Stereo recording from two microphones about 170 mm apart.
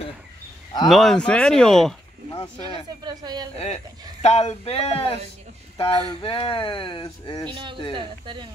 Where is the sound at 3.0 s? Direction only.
25° right (ahead or behind).